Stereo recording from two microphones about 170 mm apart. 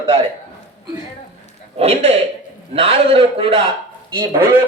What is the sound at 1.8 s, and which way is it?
A man's voice, 35° right (ahead or behind).